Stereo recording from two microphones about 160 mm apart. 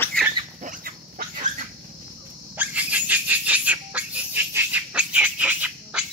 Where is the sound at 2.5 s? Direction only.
10° right (ahead or behind).